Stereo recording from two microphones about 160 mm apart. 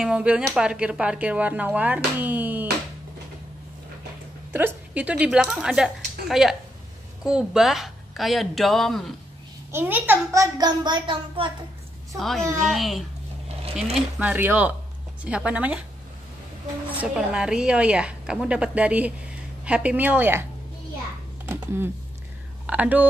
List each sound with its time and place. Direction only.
0.0 s a woman's voice: 5° right (ahead or behind)
4.5 s a woman's voice: 10° right (ahead or behind)
9.7 s a child's voice: 15° right (ahead or behind); by 11.5 s 30° right (ahead or behind)
12.2 s a woman's voice: centre (ahead or behind)
14.1 s a woman's voice: 10° right (ahead or behind)
16.9 s a woman's voice: 5° right (ahead or behind)
22.7 s a woman's voice: 10° right (ahead or behind)